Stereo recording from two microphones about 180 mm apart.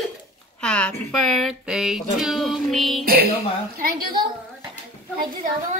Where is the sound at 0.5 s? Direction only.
5° left (ahead or behind).